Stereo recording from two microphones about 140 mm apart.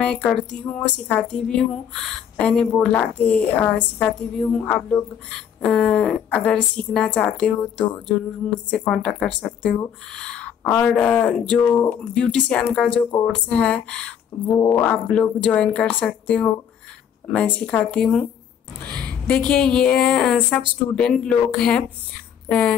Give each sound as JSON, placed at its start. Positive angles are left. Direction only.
{"t": 0.0, "sound": "speech", "side_deg": 5}
{"t": 14.4, "sound": "speech", "side_deg": 25}
{"t": 14.8, "sound": "a woman's voice", "side_deg": 10}